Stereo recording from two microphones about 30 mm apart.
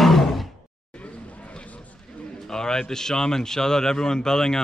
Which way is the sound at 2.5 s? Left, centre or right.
Left.